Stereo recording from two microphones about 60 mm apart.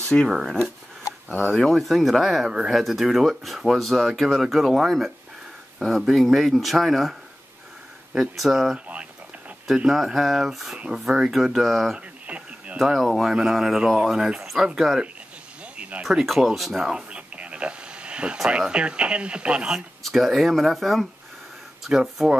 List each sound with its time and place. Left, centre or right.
0.0 s speech: centre
0.3 s speech: centre
8.7 s speech: right
9.8 s speech: centre
12.3 s a sound: right
12.7 s speech: centre
14.8 s speech: centre
16.9 s speech: centre
20.0 s speech: centre